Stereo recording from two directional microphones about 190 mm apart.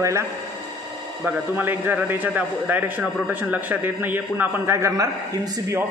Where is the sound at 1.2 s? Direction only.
10° right (ahead or behind).